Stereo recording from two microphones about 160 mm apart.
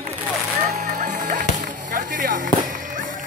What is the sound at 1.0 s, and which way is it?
Music, 55° right (ahead or behind).